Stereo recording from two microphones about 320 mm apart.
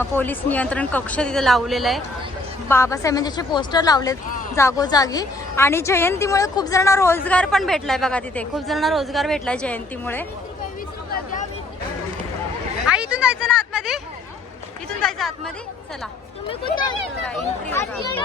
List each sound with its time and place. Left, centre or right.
0.0 s a man's voice: centre
11.1 s a sound: left
12.9 s a man's voice: centre
16.5 s speech: centre
17.2 s a man's voice: centre